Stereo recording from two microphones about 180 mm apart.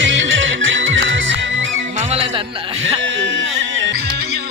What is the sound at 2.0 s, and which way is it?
Music, 35° right (ahead or behind).